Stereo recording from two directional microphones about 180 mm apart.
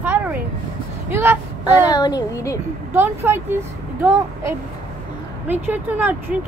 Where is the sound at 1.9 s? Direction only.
20° left (ahead or behind).